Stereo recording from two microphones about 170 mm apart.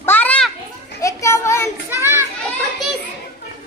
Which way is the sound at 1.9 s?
15° right (ahead or behind).